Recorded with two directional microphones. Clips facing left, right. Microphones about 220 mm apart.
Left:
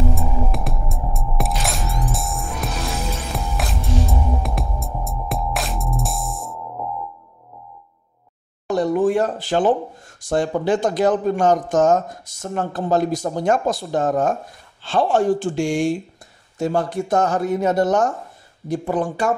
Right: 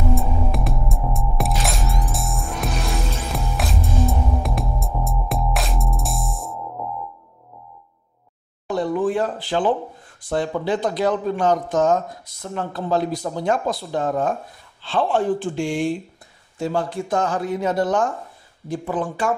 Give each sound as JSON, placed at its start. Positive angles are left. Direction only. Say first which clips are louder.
{"t": 0.1, "sound": "music", "louder": "right 1 dB", "side_deg": 0}
{"t": 8.6, "sound": "a sound", "louder": "left 3 dB", "side_deg": 45}
{"t": 10.3, "sound": "speech", "louder": "left 3 dB", "side_deg": 45}